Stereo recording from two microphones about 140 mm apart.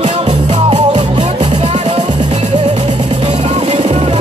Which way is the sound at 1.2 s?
55° right (ahead or behind).